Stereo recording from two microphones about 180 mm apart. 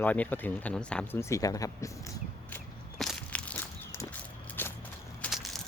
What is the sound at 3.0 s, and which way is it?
Walk, 5° left (ahead or behind).